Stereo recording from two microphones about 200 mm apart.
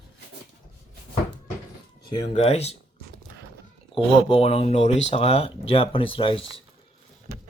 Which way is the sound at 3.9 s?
25° left (ahead or behind).